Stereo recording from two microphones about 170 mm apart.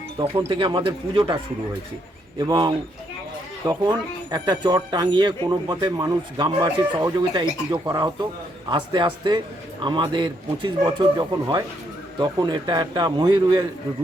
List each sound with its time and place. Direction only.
0.4 s speech: 30° right (ahead or behind)
2.4 s speech: 25° right (ahead or behind)